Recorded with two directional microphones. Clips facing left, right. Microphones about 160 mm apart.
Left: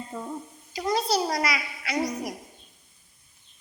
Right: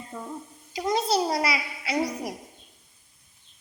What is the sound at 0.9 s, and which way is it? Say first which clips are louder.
A child's voice: right 1 dB; 25° right (ahead or behind).